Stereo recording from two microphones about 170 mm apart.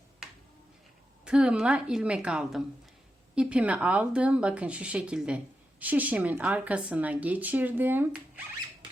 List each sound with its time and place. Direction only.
1.2 s a woman's voice: 5° right (ahead or behind)